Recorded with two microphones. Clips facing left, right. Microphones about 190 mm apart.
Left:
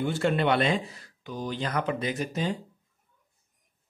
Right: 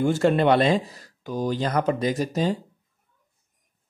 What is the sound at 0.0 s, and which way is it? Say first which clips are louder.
A man's voice: right 6 dB; 40° right (ahead or behind).